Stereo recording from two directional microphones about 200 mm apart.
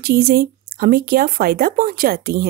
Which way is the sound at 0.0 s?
50° right (ahead or behind).